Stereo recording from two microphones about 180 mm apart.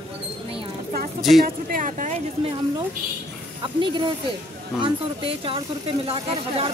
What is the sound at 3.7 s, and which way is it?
Speech, 25° right (ahead or behind).